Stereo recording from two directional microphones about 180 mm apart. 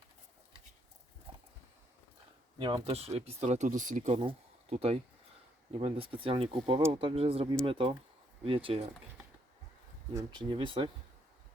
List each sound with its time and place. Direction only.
1.3 s horse: 30° right (ahead or behind)
2.6 s speech: 25° right (ahead or behind); by 4.1 s 45° right (ahead or behind)
4.1 s speech: 30° right (ahead or behind)
10.2 s speech: 25° right (ahead or behind)